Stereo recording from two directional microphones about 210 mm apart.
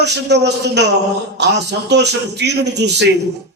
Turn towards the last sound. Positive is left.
turn(degrees=-55)  # may be behind; listen again after turning